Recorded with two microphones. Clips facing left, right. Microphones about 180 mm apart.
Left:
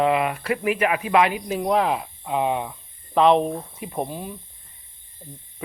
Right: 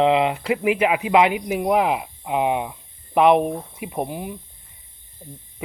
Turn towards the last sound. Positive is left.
turn(degrees=-15)  # may be behind; listen again after turning